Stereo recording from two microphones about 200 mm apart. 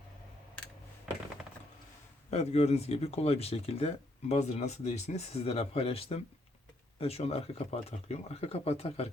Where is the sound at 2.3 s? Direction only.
30° left (ahead or behind).